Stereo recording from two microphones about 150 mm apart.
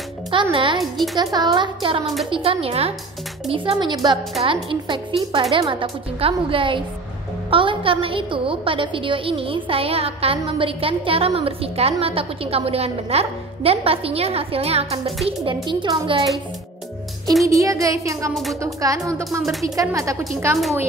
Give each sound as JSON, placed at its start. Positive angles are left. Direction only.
{"t": 0.3, "sound": "a woman's voice", "side_deg": -35}
{"t": 0.7, "sound": "speech", "side_deg": 0}
{"t": 1.2, "sound": "a woman's voice", "side_deg": -30}
{"t": 17.5, "sound": "child singing", "side_deg": -20}
{"t": 18.3, "sound": "speech", "side_deg": 0}
{"t": 18.6, "sound": "child singing", "side_deg": -20}